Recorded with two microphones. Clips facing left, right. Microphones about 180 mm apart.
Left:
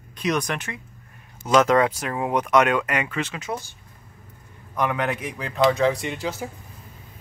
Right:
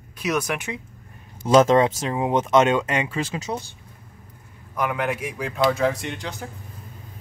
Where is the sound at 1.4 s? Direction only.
30° right (ahead or behind).